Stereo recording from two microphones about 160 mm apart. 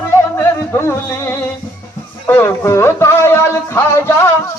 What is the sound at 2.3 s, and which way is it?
Speech, 15° left (ahead or behind).